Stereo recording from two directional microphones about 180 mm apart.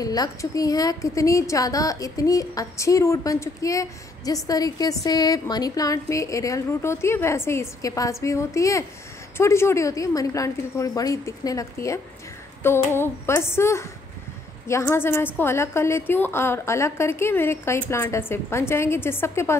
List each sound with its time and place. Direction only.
0.0 s a woman's voice: 20° left (ahead or behind)